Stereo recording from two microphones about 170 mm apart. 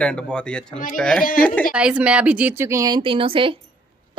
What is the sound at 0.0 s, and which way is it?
A woman's voice, 5° left (ahead or behind).